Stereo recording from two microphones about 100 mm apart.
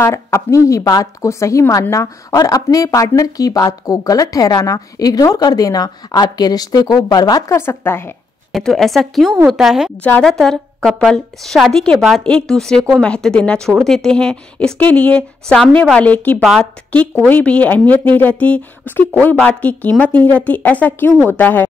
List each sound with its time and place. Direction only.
0.0 s a woman's voice: 30° left (ahead or behind)
7.4 s speech: 25° left (ahead or behind)
8.5 s a woman's voice: 5° left (ahead or behind)
10.4 s a woman's voice: 5° left (ahead or behind)